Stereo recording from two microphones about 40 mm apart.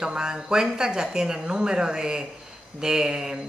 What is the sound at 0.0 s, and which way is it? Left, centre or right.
Speech, centre.